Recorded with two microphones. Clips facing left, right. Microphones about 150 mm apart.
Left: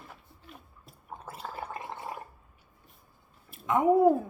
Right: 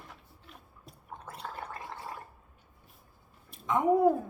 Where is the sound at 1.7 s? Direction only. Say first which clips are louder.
Left 3 dB; 20° left (ahead or behind).